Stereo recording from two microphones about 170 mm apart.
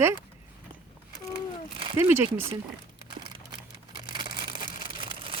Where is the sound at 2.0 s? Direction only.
15° right (ahead or behind).